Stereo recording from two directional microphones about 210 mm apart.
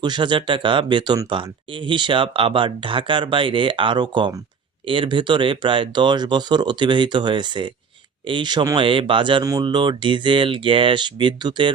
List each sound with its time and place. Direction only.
0.0 s speech: 20° right (ahead or behind)